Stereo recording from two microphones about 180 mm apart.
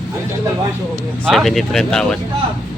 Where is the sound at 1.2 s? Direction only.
Centre (ahead or behind).